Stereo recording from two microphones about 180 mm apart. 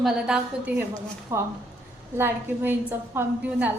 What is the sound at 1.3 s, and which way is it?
A woman's voice, 15° right (ahead or behind).